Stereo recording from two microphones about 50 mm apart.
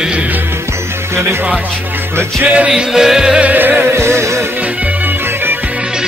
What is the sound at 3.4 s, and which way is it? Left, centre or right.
Music, right.